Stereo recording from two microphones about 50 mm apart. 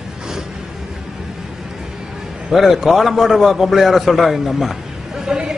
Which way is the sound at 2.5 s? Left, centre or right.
Centre.